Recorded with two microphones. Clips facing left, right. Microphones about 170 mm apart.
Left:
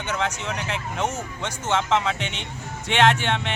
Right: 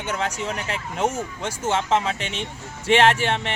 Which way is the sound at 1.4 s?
30° right (ahead or behind).